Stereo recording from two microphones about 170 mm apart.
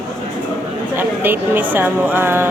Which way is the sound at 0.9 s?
10° right (ahead or behind).